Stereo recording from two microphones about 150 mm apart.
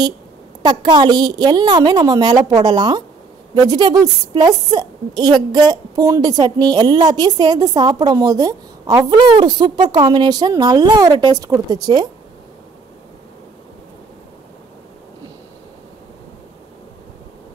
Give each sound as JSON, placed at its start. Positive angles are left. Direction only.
{"t": 0.6, "sound": "a woman's voice", "side_deg": -30}